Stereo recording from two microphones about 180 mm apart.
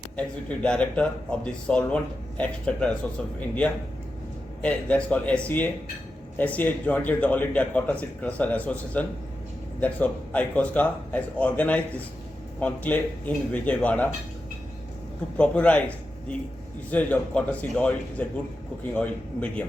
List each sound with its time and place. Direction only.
0.4 s a man's voice: 5° left (ahead or behind)
4.6 s a man's voice: 5° left (ahead or behind)
15.4 s a man's voice: 5° left (ahead or behind)
16.9 s a man's voice: 10° left (ahead or behind)